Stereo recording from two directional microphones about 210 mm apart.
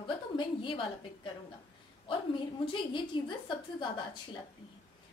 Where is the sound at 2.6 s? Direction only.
25° left (ahead or behind).